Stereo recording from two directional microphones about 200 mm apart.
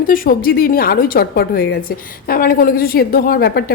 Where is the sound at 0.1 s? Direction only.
45° left (ahead or behind).